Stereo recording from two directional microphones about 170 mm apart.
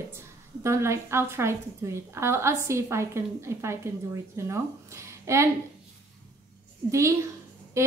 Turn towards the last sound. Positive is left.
turn(degrees=-15)  # may be behind; listen again after turning